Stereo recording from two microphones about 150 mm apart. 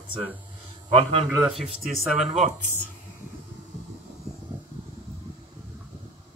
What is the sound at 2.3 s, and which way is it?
Speech, 50° right (ahead or behind).